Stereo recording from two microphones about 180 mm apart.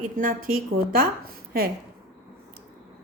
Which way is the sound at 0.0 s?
50° right (ahead or behind).